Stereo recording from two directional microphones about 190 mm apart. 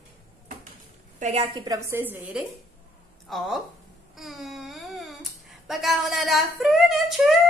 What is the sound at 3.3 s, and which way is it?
Speech, centre (ahead or behind).